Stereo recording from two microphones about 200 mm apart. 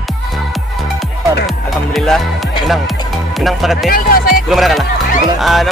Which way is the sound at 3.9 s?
45° left (ahead or behind).